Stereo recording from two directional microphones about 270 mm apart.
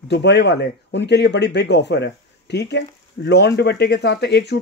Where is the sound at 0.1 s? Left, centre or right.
Left.